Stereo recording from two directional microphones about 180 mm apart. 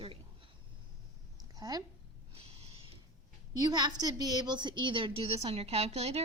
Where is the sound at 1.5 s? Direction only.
20° right (ahead or behind).